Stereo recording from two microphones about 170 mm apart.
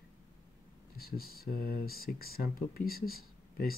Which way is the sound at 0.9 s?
60° left (ahead or behind).